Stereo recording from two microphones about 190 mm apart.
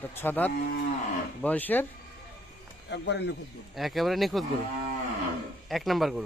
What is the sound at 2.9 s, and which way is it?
Speech, 65° left (ahead or behind).